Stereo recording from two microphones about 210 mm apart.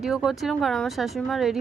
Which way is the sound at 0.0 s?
Centre (ahead or behind).